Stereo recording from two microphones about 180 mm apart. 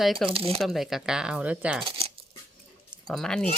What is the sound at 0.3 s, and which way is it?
Speech, 30° right (ahead or behind).